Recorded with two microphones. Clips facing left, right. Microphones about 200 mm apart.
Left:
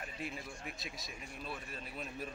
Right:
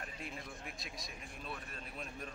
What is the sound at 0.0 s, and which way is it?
A man's voice, centre (ahead or behind).